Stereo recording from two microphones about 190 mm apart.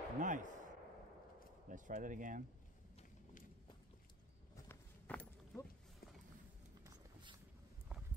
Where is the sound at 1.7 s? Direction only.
45° right (ahead or behind).